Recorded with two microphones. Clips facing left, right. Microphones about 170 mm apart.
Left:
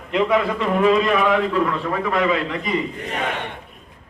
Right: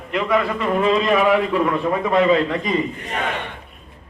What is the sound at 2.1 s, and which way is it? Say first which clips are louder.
Speech: right 5 dB; 30° right (ahead or behind).